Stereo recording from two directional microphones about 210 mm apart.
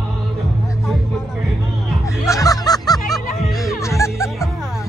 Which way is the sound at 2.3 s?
15° left (ahead or behind).